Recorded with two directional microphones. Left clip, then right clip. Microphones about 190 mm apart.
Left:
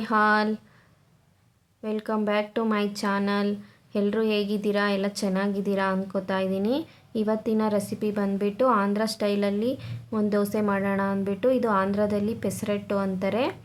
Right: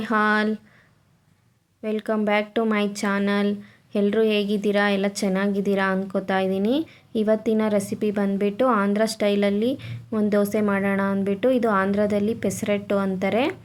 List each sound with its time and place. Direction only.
0.0 s a woman's voice: 15° right (ahead or behind)
1.8 s a woman's voice: 15° right (ahead or behind)